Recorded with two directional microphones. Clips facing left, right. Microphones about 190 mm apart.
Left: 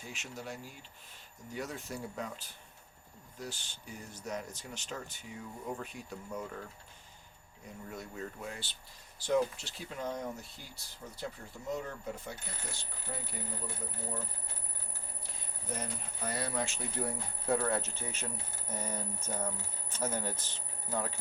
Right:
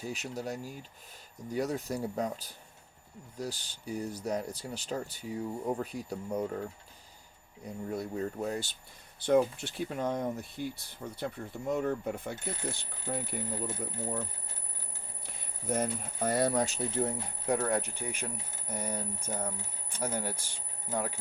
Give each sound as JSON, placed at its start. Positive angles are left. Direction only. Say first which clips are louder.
{"t": 0.0, "sound": "speech", "louder": "right 7 dB", "side_deg": -40}
{"t": 7.6, "sound": "speech", "louder": "right 9 dB", "side_deg": -35}
{"t": 9.2, "sound": "speech", "louder": "right 5 dB", "side_deg": -55}
{"t": 15.7, "sound": "speech", "louder": "right 9 dB", "side_deg": -50}
{"t": 17.0, "sound": "speech", "louder": "right 3 dB", "side_deg": -20}